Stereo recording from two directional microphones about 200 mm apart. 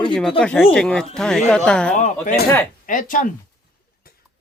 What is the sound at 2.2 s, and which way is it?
Speech, 50° left (ahead or behind).